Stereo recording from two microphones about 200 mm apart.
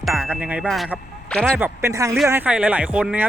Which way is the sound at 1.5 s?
10° right (ahead or behind).